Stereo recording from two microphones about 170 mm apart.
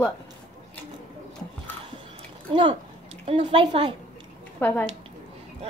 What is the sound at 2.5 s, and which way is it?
Speech, 30° right (ahead or behind).